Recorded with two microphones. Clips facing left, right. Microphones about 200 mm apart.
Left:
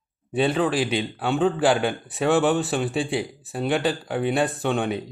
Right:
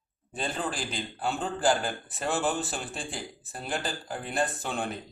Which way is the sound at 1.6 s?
85° left.